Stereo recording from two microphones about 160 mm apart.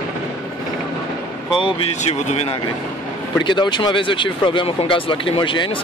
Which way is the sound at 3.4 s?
30° left (ahead or behind).